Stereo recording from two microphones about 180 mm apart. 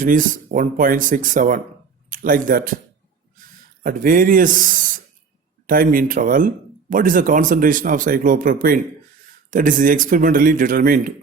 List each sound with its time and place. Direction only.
0.0 s speech: 50° right (ahead or behind)
3.8 s speech: 50° right (ahead or behind)